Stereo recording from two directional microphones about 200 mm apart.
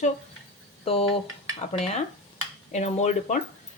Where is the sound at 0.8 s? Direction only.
30° left (ahead or behind).